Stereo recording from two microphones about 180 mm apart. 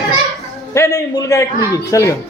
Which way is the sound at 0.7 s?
15° left (ahead or behind).